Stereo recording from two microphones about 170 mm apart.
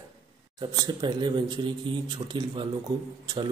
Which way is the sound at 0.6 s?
25° right (ahead or behind).